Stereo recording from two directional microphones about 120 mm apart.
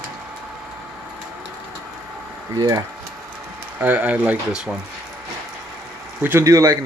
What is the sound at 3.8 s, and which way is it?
Speech, 15° right (ahead or behind).